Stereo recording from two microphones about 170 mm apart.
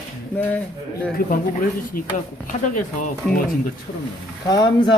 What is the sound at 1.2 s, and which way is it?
Speech, 60° left (ahead or behind).